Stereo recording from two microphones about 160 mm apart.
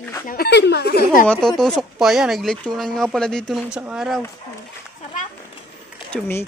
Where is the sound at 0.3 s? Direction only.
80° left.